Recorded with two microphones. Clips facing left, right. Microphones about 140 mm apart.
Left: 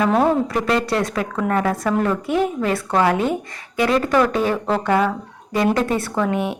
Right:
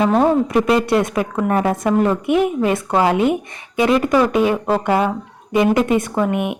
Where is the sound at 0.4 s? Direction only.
15° right (ahead or behind).